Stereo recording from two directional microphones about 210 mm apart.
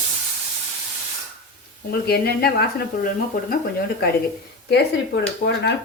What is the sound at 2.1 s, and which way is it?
Speech, 50° left (ahead or behind).